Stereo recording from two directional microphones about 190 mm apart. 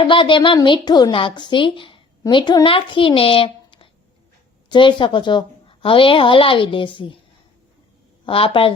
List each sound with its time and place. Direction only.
0.0 s speech: 25° left (ahead or behind)
8.3 s speech: 30° left (ahead or behind)